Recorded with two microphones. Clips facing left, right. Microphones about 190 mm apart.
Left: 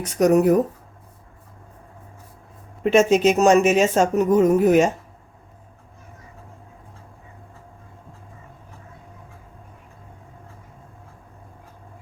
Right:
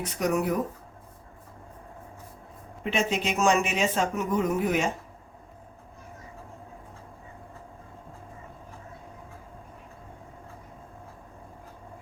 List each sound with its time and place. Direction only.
0.0 s speech: 40° left (ahead or behind)
2.8 s speech: 45° left (ahead or behind)